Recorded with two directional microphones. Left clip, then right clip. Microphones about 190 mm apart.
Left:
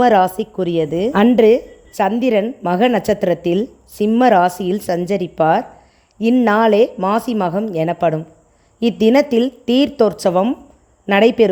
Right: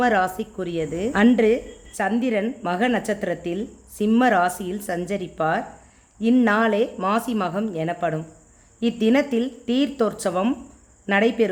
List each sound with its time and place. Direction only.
0.0 s speech: 35° left (ahead or behind)
11.1 s speech: 35° left (ahead or behind)